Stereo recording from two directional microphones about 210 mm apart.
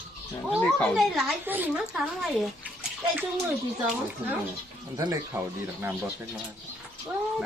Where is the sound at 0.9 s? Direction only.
Centre (ahead or behind).